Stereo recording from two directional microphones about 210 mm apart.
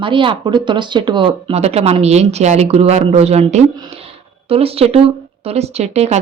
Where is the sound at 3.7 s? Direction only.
20° right (ahead or behind).